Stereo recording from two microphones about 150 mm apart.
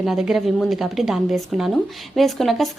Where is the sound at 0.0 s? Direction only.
5° right (ahead or behind).